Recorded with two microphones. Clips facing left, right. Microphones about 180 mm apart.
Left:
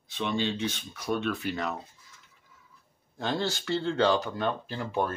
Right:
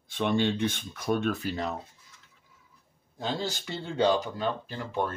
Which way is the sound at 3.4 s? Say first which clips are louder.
Left 4 dB; 15° right (ahead or behind).